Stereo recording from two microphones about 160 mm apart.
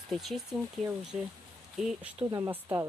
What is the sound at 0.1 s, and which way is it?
Speech, centre (ahead or behind).